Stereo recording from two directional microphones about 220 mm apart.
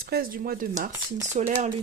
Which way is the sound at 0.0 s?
45° right (ahead or behind).